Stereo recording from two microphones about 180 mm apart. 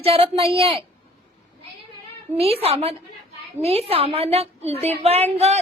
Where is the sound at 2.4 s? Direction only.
35° right (ahead or behind).